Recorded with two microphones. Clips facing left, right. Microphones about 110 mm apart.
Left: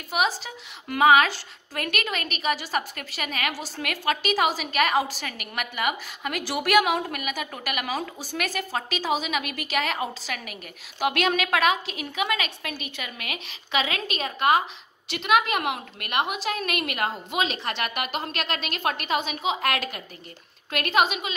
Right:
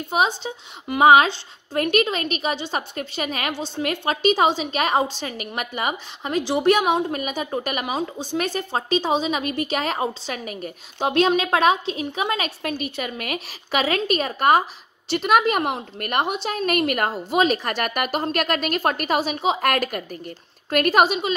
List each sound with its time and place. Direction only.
0.4 s a woman's voice: 25° right (ahead or behind)